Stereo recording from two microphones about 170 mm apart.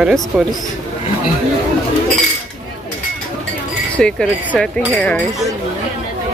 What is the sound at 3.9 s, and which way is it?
Chink, 5° left (ahead or behind).